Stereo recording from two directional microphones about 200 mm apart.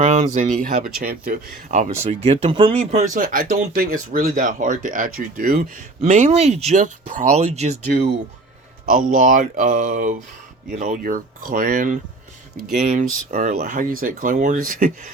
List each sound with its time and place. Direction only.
0.0 s speech: 35° right (ahead or behind)
6.1 s speech: 35° right (ahead or behind)
8.9 s speech: 40° right (ahead or behind)